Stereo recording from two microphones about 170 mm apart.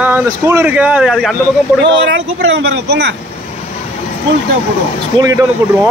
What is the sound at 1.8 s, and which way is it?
Speech, 90° right.